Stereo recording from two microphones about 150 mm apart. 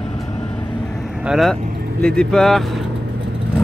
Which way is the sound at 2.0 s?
5° left (ahead or behind).